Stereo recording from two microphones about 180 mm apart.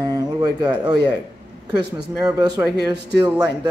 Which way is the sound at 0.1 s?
20° right (ahead or behind).